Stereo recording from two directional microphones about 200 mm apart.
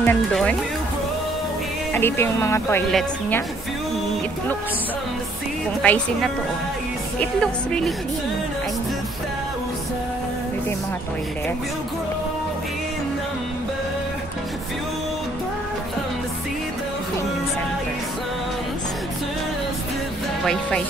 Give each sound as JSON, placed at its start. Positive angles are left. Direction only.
{"t": 0.0, "sound": "speech", "side_deg": 5}
{"t": 2.0, "sound": "speech", "side_deg": 10}
{"t": 2.9, "sound": "speech", "side_deg": 0}
{"t": 5.8, "sound": "speech", "side_deg": 5}